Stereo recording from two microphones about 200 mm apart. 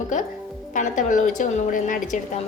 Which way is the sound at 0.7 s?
40° left (ahead or behind).